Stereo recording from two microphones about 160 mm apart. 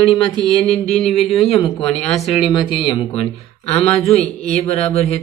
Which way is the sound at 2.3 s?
30° left (ahead or behind).